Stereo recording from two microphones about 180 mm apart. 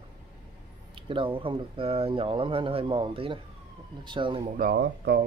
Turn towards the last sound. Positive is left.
turn(degrees=-65)  # may be behind; listen again after turning